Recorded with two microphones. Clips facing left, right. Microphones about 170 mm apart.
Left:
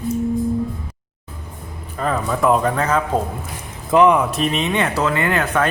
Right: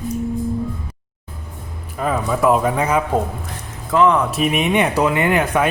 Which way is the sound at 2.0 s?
5° right (ahead or behind).